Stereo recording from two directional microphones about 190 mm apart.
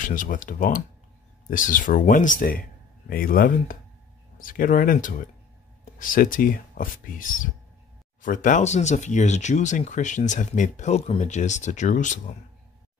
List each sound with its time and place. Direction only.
0.0 s speech: 45° left (ahead or behind)